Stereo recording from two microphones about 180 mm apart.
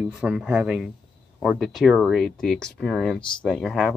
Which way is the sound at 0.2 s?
5° right (ahead or behind).